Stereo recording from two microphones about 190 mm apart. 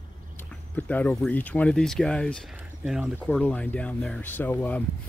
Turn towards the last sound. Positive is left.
turn(degrees=10)  # may be behind; listen again after turning